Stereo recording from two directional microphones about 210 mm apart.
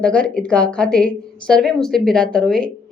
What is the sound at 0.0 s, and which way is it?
A woman's voice, 5° left (ahead or behind).